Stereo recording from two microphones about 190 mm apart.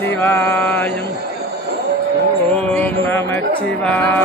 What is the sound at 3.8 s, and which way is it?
Speech, 5° left (ahead or behind).